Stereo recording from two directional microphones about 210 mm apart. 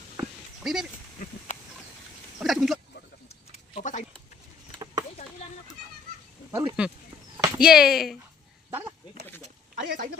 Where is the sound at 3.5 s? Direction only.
35° left (ahead or behind).